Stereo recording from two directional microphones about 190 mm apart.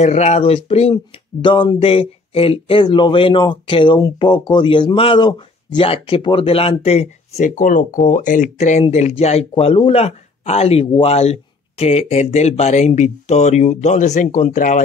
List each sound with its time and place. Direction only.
0.0 s speech: 35° left (ahead or behind)